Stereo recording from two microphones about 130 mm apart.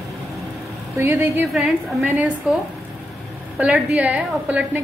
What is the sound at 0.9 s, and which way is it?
Speech, 20° right (ahead or behind).